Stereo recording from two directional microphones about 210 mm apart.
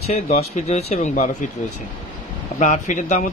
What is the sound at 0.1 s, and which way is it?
Speech, 30° left (ahead or behind).